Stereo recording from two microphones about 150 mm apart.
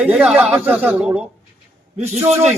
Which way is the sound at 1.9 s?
45° right (ahead or behind).